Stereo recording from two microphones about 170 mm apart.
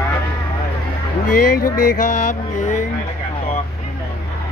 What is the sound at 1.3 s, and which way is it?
Music, 60° left (ahead or behind).